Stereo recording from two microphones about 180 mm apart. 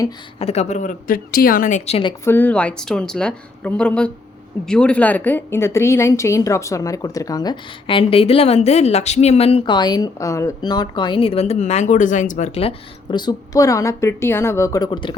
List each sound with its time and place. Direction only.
0.3 s a woman's voice: 35° left (ahead or behind)
2.2 s a woman's voice: 10° left (ahead or behind)